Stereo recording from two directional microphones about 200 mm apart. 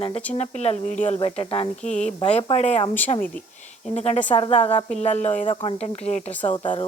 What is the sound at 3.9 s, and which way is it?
A woman's voice, 30° left (ahead or behind).